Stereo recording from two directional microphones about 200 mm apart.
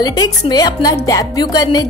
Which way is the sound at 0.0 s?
20° left (ahead or behind).